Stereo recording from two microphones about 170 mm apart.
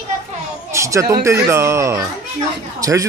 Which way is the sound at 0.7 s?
15° right (ahead or behind).